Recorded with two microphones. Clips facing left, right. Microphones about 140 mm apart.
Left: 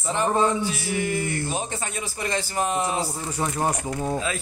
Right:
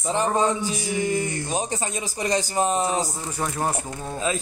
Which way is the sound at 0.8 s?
20° right (ahead or behind).